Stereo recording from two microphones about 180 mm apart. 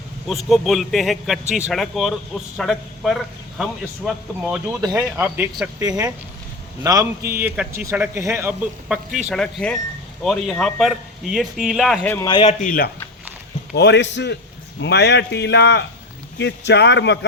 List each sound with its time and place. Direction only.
0.3 s a man's voice: centre (ahead or behind)
4.8 s a man's voice: 20° right (ahead or behind)
6.8 s a man's voice: 20° right (ahead or behind); by 11.9 s centre (ahead or behind)
12.0 s a man's voice: 10° left (ahead or behind)
12.3 s speech: 30° left (ahead or behind)
12.6 s speech: 55° left (ahead or behind)
13.7 s speech: 70° left (ahead or behind)
14.8 s speech: 70° left (ahead or behind)